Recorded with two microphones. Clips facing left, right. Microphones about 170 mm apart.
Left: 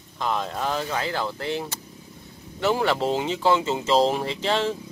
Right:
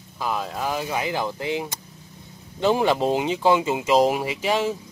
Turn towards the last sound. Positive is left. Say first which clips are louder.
# right 1 dB
turn(degrees=-10)  # may be behind; listen again after turning